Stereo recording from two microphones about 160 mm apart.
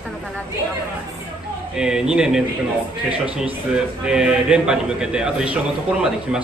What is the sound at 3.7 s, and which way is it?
A man's voice, 5° right (ahead or behind).